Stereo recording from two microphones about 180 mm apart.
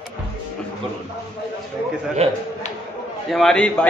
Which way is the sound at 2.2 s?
35° right (ahead or behind).